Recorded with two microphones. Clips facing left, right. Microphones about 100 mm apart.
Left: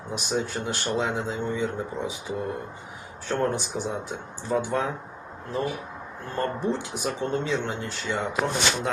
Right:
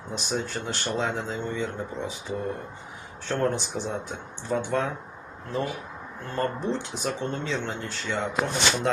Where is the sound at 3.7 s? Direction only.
10° left (ahead or behind).